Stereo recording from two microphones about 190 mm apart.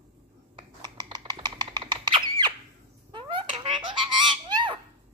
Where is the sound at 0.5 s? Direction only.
20° right (ahead or behind).